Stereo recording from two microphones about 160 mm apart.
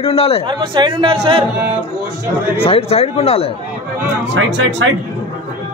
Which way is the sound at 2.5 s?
35° left (ahead or behind).